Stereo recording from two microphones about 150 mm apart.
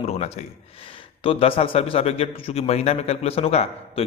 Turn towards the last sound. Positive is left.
turn(degrees=45)  # may be behind; listen again after turning